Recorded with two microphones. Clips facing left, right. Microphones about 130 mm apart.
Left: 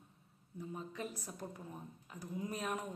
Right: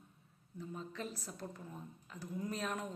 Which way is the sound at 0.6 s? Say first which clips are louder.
Even; 15° left (ahead or behind).